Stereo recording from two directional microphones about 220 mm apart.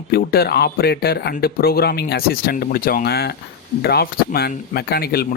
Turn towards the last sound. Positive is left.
turn(degrees=45)  # may be behind; listen again after turning